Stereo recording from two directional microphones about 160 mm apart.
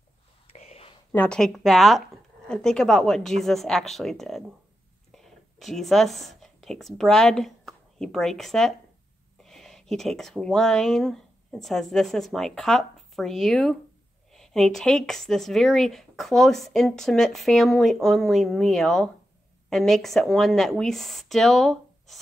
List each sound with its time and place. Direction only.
0.5 s whispering: 40° left (ahead or behind)
1.1 s speech: 10° left (ahead or behind)